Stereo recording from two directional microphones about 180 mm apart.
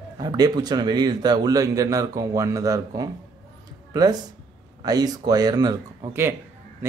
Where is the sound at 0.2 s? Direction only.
20° right (ahead or behind).